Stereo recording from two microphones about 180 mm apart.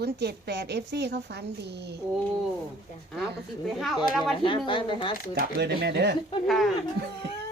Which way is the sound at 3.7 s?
Centre (ahead or behind).